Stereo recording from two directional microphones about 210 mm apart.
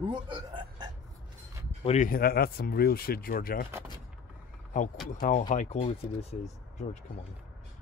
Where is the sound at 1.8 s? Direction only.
35° left (ahead or behind).